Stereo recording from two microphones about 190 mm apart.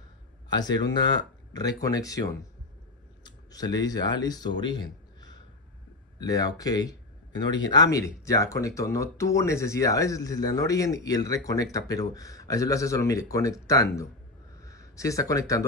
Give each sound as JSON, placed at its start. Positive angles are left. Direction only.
{"t": 0.5, "sound": "speech", "side_deg": 20}
{"t": 3.3, "sound": "speech", "side_deg": 20}